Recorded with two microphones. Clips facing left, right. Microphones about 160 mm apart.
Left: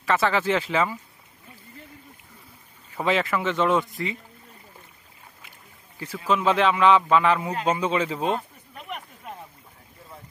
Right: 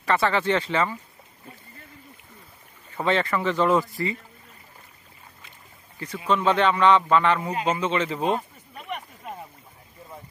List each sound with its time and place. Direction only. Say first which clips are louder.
0.0 s speech: even; centre (ahead or behind)
2.9 s speech: even; 5° left (ahead or behind)
6.2 s speech: even; 5° left (ahead or behind)
7.7 s a sound: left 1 dB; 10° left (ahead or behind)